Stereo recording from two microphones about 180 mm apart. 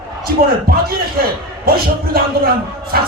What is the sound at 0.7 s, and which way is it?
A man's voice, 55° right (ahead or behind).